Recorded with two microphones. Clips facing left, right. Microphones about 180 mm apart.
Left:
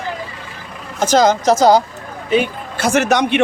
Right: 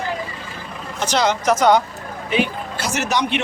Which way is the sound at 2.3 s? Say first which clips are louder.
Left 4 dB; 50° left (ahead or behind).